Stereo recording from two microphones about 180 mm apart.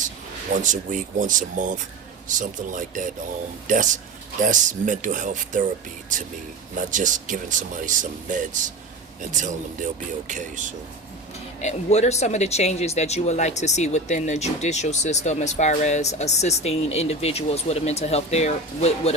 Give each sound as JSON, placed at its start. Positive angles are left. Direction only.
{"t": 0.5, "sound": "speech", "side_deg": -45}
{"t": 6.7, "sound": "speech", "side_deg": -45}
{"t": 11.6, "sound": "speech", "side_deg": 40}